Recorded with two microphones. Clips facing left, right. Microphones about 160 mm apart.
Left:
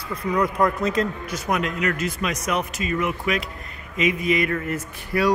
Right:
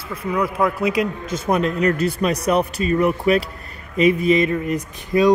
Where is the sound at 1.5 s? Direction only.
35° right (ahead or behind).